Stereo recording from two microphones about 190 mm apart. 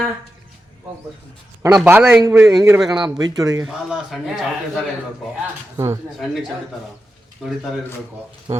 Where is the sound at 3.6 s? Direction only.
Centre (ahead or behind).